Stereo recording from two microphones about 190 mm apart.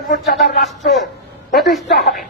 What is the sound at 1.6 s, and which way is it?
Speech, centre (ahead or behind).